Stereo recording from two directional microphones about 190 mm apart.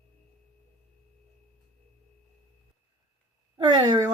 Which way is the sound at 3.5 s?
20° right (ahead or behind).